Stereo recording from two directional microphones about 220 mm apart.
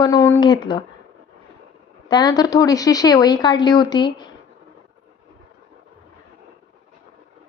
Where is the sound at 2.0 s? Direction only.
20° left (ahead or behind).